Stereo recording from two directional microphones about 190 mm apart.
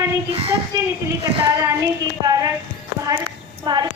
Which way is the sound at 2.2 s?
20° right (ahead or behind).